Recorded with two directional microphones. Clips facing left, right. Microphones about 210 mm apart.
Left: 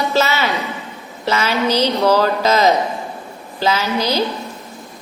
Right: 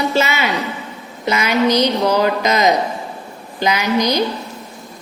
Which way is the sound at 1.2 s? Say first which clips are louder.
Right 2 dB; 15° right (ahead or behind).